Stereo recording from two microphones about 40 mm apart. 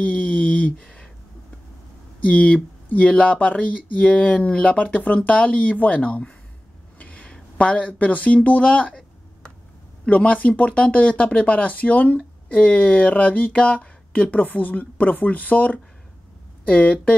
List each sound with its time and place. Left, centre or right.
0.0 s a sound: left
2.2 s speech: left
4.7 s speech: left
7.0 s a sound: left
10.0 s speech: left
14.4 s speech: left